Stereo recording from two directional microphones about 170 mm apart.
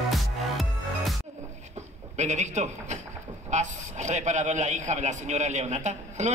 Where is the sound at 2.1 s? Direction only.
45° right (ahead or behind).